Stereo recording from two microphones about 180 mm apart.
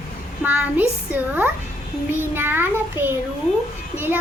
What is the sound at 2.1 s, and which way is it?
Child singing, 10° right (ahead or behind).